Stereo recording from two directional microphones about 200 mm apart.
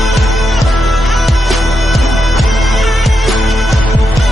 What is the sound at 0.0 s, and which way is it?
Music, centre (ahead or behind).